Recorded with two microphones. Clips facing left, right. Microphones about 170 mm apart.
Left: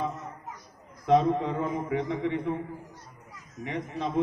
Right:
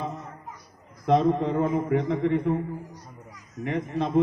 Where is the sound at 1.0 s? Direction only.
35° right (ahead or behind).